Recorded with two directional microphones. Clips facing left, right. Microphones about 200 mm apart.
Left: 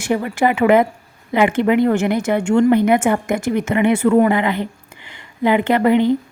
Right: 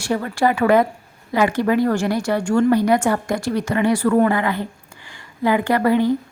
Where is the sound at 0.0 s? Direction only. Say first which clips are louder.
Left 2 dB; 15° left (ahead or behind).